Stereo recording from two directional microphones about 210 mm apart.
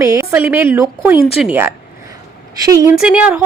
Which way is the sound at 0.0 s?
15° right (ahead or behind).